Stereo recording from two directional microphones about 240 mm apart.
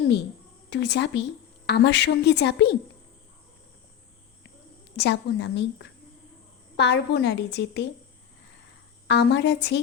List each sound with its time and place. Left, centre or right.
0.7 s a woman's voice: left
4.9 s a woman's voice: left
9.0 s a woman's voice: left